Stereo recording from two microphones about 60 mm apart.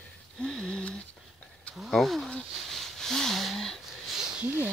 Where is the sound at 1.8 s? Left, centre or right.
Centre.